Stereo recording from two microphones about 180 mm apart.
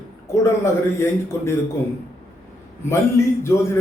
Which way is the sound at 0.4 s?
15° left (ahead or behind).